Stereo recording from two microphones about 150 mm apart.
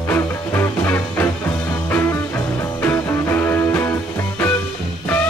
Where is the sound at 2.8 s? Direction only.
20° left (ahead or behind).